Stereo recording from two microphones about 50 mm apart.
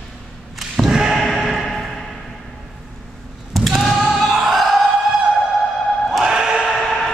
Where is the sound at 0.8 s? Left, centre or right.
Centre.